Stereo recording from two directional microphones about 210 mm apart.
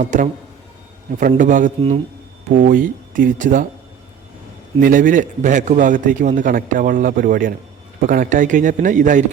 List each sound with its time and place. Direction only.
0.0 s a man's voice: 35° right (ahead or behind)
4.8 s a man's voice: 40° right (ahead or behind)